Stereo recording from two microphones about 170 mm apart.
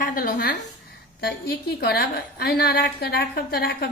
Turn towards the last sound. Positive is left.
turn(degrees=65)  # may be behind; listen again after turning